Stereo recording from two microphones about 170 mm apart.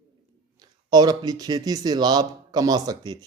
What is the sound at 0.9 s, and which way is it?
Speech, 25° right (ahead or behind).